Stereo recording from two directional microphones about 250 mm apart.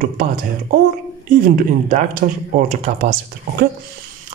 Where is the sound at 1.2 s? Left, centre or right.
Right.